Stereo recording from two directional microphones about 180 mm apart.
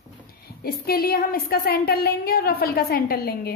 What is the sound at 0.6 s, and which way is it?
A woman's voice, 55° left (ahead or behind).